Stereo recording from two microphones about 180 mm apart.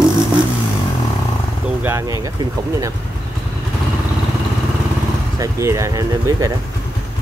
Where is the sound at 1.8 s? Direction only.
15° right (ahead or behind).